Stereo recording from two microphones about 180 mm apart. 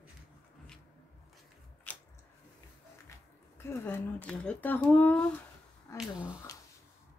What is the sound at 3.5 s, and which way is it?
Speech, 10° left (ahead or behind).